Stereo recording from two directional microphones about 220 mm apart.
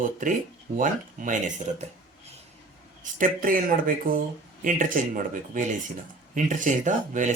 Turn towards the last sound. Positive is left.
turn(degrees=-35)  # may be behind; listen again after turning